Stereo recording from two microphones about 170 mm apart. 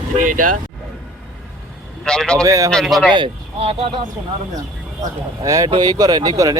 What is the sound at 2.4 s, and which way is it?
Speech, 20° right (ahead or behind).